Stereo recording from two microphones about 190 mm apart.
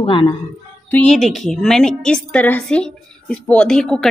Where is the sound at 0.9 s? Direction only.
Centre (ahead or behind).